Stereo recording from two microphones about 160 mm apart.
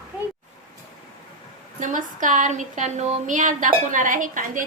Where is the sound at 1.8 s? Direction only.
55° right (ahead or behind).